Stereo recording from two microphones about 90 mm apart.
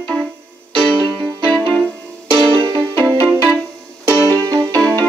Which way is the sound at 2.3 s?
60° right (ahead or behind).